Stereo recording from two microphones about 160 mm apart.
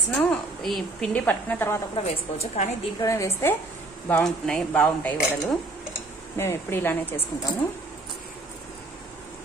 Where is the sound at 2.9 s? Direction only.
20° left (ahead or behind).